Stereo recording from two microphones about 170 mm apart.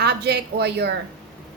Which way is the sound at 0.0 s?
70° right (ahead or behind).